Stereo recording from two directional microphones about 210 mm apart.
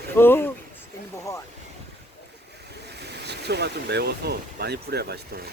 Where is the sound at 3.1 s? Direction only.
55° right (ahead or behind).